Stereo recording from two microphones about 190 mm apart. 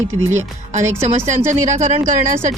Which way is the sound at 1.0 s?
40° right (ahead or behind).